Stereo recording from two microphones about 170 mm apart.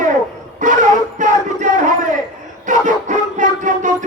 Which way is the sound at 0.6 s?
45° right (ahead or behind).